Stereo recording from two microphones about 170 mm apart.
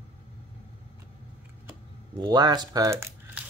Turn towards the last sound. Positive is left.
turn(degrees=-15)  # may be behind; listen again after turning